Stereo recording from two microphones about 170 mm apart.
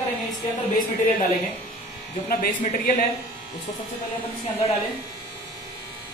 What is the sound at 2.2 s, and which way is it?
Speech, 55° left (ahead or behind).